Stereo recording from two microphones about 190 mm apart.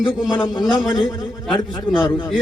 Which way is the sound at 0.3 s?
25° left (ahead or behind).